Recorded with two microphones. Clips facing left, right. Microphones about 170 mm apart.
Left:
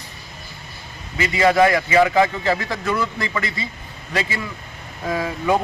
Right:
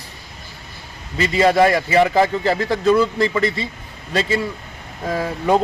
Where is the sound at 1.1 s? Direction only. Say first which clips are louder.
Right 2 dB; 35° right (ahead or behind).